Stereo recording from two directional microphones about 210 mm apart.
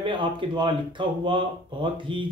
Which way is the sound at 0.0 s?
20° right (ahead or behind).